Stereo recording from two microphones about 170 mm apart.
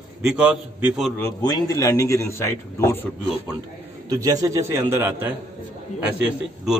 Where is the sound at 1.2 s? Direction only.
20° left (ahead or behind).